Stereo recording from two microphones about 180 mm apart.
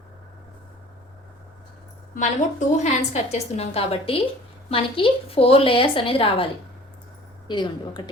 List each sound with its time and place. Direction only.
2.1 s a woman's voice: 40° left (ahead or behind); by 8.0 s 25° left (ahead or behind)